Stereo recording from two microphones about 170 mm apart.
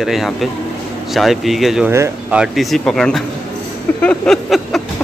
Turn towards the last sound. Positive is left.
turn(degrees=0)  # may be behind; listen again after turning